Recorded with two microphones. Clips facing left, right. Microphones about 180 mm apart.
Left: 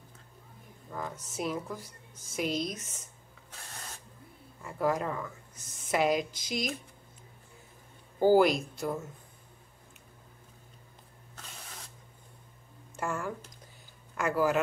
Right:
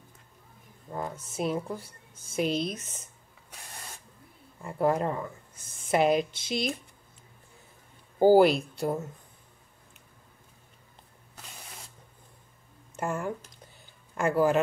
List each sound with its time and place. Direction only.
0.9 s speech: 25° right (ahead or behind)
4.6 s speech: 30° right (ahead or behind)
8.2 s speech: 35° right (ahead or behind)
12.9 s speech: 20° right (ahead or behind)